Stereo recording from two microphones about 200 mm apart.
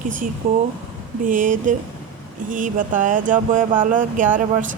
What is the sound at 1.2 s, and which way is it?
Speech, 40° right (ahead or behind).